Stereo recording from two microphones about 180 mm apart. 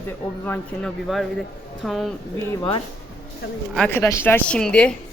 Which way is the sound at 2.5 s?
20° left (ahead or behind).